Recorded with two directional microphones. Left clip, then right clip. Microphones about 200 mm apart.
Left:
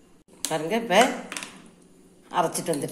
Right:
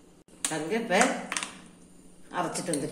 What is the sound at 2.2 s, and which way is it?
Speech, 45° left (ahead or behind).